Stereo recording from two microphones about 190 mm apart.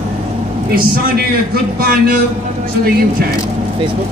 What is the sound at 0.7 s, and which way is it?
A man's voice, 50° right (ahead or behind).